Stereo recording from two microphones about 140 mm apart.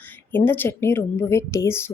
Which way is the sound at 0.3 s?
15° left (ahead or behind).